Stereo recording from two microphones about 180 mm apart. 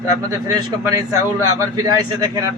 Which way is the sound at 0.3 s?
20° right (ahead or behind).